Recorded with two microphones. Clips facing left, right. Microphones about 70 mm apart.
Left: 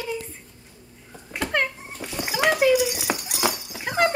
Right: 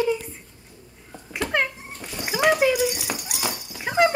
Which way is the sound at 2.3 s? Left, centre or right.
Centre.